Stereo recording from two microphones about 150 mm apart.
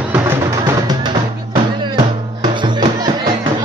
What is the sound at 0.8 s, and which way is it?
Music, 30° right (ahead or behind).